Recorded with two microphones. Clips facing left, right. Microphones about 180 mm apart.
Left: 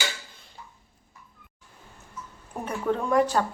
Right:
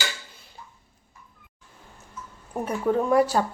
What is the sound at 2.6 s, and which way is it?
Speech, 10° right (ahead or behind).